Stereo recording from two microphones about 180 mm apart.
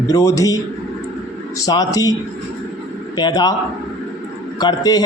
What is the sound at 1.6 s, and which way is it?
Speech, 20° left (ahead or behind).